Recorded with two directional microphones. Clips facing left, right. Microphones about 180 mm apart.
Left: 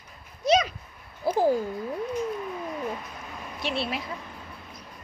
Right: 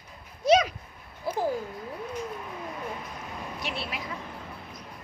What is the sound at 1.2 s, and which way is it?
Speech, 30° left (ahead or behind).